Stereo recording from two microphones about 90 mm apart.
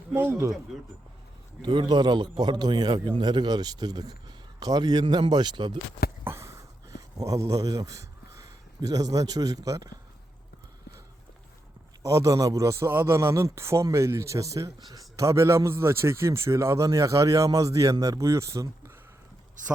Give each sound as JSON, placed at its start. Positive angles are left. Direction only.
{"t": 0.1, "sound": "speech", "side_deg": -30}
{"t": 0.7, "sound": "speech", "side_deg": -5}
{"t": 1.6, "sound": "a man's voice", "side_deg": -60}
{"t": 6.2, "sound": "a sound", "side_deg": -30}
{"t": 7.2, "sound": "a man's voice", "side_deg": -40}
{"t": 12.0, "sound": "a man's voice", "side_deg": -40}